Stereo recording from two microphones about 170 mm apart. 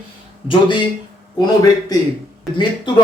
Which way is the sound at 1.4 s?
20° left (ahead or behind).